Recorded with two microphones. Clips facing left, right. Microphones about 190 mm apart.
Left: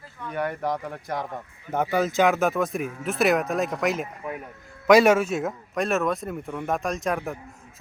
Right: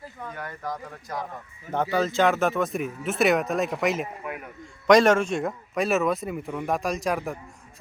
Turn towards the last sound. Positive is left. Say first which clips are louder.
# even
turn(degrees=0)  # may be behind; listen again after turning